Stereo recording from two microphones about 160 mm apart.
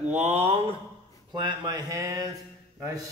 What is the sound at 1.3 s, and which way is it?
Speech, 30° right (ahead or behind).